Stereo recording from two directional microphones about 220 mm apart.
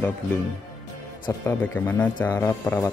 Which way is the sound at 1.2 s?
10° left (ahead or behind).